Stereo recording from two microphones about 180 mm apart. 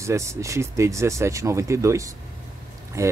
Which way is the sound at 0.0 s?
15° right (ahead or behind).